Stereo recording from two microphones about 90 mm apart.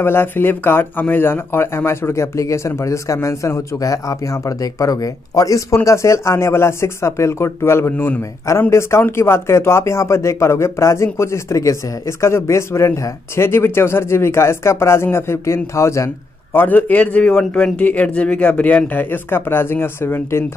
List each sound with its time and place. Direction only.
0.0 s speech: 25° left (ahead or behind)
16.5 s a man's voice: 20° left (ahead or behind)